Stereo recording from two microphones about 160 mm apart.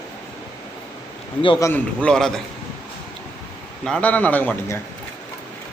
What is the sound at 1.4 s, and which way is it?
Speech, 30° left (ahead or behind).